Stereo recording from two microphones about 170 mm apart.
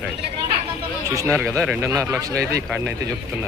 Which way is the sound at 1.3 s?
Centre (ahead or behind).